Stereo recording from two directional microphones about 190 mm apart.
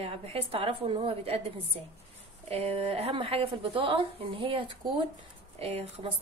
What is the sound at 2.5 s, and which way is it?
A woman's voice, 30° right (ahead or behind).